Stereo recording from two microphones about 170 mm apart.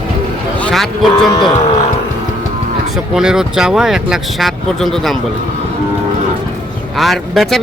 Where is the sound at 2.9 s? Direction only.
5° right (ahead or behind).